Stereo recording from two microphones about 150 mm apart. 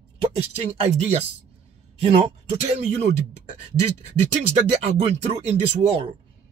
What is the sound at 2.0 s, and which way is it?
Speech, 45° right (ahead or behind).